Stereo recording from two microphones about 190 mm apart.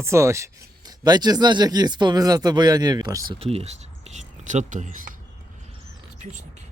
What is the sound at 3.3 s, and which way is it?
Speech, 30° right (ahead or behind).